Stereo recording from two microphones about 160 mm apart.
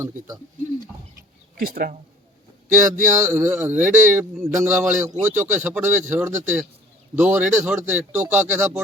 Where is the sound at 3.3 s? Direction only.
15° right (ahead or behind).